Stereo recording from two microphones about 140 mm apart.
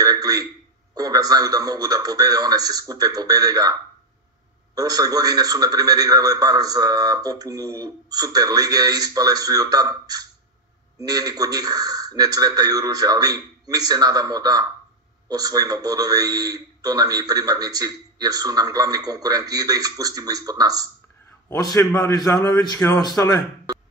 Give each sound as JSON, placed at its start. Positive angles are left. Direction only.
{"t": 0.0, "sound": "a sound", "side_deg": -25}
{"t": 0.9, "sound": "a man's voice", "side_deg": -25}
{"t": 4.7, "sound": "a man's voice", "side_deg": -25}
{"t": 21.5, "sound": "a man's voice", "side_deg": 25}